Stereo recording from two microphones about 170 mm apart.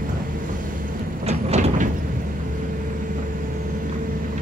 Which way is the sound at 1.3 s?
45° right (ahead or behind).